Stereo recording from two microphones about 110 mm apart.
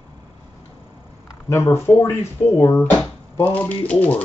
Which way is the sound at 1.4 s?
25° left (ahead or behind).